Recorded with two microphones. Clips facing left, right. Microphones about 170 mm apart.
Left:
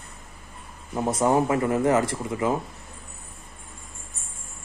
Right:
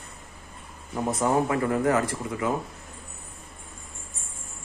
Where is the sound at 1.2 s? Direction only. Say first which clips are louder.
Left 2 dB; 25° left (ahead or behind).